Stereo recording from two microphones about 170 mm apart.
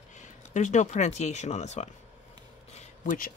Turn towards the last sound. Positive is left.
turn(degrees=55)  # may be behind; listen again after turning